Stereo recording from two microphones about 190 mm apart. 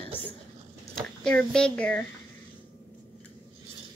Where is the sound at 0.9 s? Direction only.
5° left (ahead or behind).